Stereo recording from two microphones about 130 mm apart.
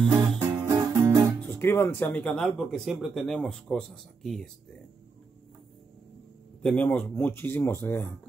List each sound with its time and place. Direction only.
0.4 s music: 15° right (ahead or behind)
1.4 s speech: 15° left (ahead or behind)
6.6 s speech: 10° left (ahead or behind)